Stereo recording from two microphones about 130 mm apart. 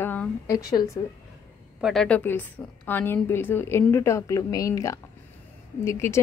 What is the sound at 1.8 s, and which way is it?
A woman's voice, 5° left (ahead or behind).